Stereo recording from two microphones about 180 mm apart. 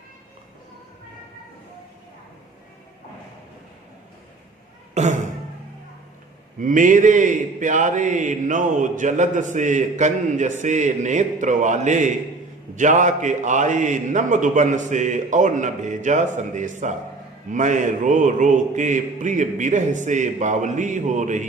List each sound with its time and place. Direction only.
5.0 s speech: 40° right (ahead or behind)
6.6 s a man's voice: 45° right (ahead or behind)